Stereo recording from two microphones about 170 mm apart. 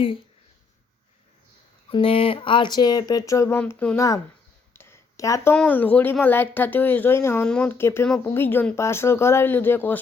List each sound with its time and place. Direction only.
1.9 s speech: 35° left (ahead or behind); by 4.2 s 15° left (ahead or behind)
4.7 s a sound: 15° left (ahead or behind)
5.5 s speech: 10° left (ahead or behind)